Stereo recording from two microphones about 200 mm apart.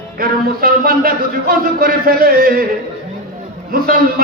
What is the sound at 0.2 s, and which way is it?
Speech, 45° right (ahead or behind).